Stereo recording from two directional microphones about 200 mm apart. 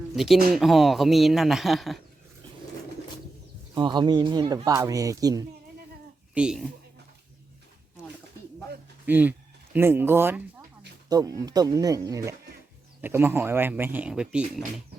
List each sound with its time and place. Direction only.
0.1 s speech: centre (ahead or behind)
3.8 s speech: 20° right (ahead or behind)
6.3 s speech: 5° right (ahead or behind)
9.0 s speech: 10° right (ahead or behind)